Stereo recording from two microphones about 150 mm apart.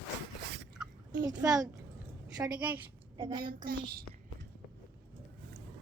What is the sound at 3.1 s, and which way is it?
Speech, 30° right (ahead or behind).